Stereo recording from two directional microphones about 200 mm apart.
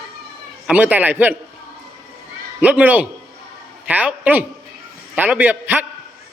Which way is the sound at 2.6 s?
5° right (ahead or behind).